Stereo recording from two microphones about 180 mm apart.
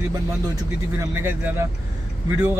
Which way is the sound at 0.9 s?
10° right (ahead or behind).